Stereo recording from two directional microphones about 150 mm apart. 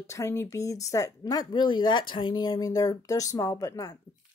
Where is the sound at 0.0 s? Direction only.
20° left (ahead or behind).